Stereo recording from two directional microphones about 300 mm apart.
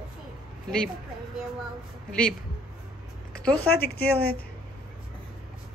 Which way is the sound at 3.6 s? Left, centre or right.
Left.